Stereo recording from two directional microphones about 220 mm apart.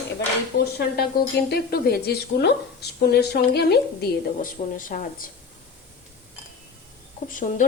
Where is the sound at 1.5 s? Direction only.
45° left (ahead or behind).